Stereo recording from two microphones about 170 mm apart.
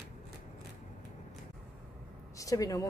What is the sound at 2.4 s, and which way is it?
Speech, 20° left (ahead or behind).